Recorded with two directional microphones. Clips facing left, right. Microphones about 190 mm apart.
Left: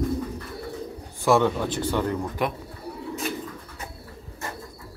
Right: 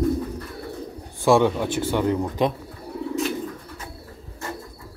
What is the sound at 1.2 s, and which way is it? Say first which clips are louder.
Speech: right 3 dB; 15° right (ahead or behind).